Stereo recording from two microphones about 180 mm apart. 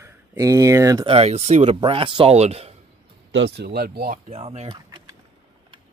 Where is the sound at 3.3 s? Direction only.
80° right; by 4.2 s 60° right (ahead or behind).